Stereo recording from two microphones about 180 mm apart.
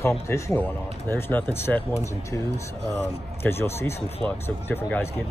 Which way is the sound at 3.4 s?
15° left (ahead or behind).